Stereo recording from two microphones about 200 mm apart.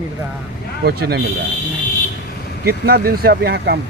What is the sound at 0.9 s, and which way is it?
Speech, 50° right (ahead or behind).